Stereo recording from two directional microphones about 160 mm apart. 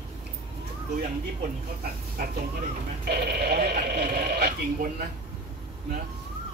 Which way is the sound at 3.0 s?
90° right.